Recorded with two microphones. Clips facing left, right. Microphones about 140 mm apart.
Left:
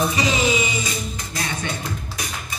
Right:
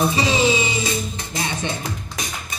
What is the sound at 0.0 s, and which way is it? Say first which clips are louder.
Music: right 2 dB; 30° right (ahead or behind).